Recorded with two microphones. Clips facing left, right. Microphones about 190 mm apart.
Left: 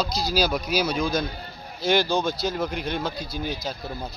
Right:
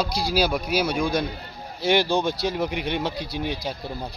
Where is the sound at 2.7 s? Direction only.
70° right (ahead or behind).